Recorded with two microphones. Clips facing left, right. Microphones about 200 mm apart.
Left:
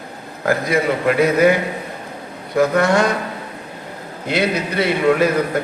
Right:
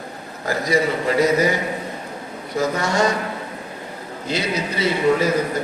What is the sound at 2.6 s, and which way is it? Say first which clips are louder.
Speech: left 5 dB; 55° left (ahead or behind).